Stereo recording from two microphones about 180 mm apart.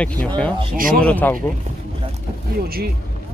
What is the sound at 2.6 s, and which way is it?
Speech, 60° right (ahead or behind).